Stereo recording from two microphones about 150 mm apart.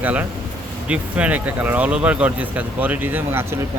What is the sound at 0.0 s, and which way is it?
Speech, 10° right (ahead or behind).